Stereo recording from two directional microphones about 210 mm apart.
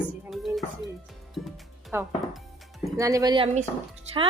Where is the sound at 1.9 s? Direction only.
10° right (ahead or behind).